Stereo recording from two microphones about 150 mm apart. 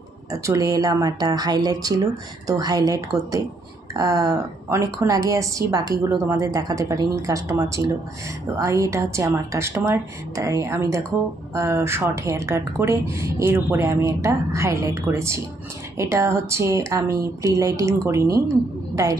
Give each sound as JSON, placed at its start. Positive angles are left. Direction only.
{"t": 0.3, "sound": "a woman's voice", "side_deg": -25}